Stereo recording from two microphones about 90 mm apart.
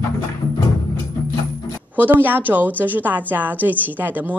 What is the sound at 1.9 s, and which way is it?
A woman's voice, 20° right (ahead or behind).